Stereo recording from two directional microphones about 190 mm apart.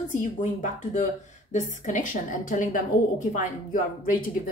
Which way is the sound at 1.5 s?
40° left (ahead or behind).